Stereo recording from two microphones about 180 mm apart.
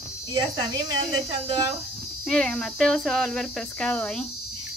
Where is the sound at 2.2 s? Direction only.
5° left (ahead or behind).